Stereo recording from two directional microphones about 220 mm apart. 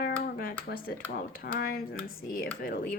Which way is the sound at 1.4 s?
45° left (ahead or behind).